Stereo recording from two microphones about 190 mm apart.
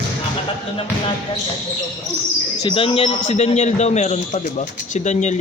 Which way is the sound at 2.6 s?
25° left (ahead or behind).